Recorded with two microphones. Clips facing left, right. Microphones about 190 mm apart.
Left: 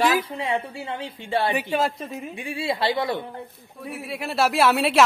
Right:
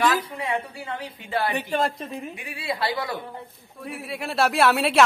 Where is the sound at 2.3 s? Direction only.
25° left (ahead or behind).